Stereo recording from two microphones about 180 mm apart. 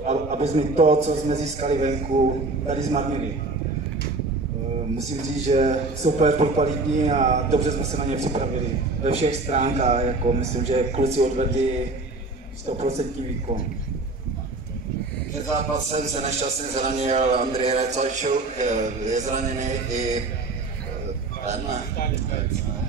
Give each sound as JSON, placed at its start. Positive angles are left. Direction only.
{"t": 0.0, "sound": "a man's voice", "side_deg": -40}
{"t": 5.5, "sound": "a man's voice", "side_deg": -40}
{"t": 12.7, "sound": "a man's voice", "side_deg": -35}
{"t": 15.5, "sound": "a man's voice", "side_deg": -35}